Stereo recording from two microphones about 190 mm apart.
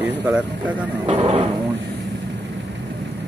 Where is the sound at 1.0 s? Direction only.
35° right (ahead or behind).